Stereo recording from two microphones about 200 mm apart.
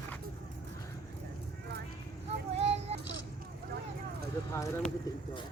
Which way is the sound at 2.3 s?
30° right (ahead or behind).